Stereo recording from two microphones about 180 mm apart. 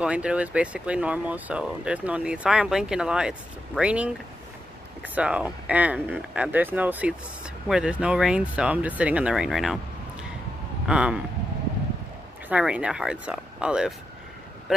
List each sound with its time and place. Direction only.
0.0 s speech: 5° right (ahead or behind)
10.9 s speech: 5° right (ahead or behind)
12.4 s speech: 5° right (ahead or behind)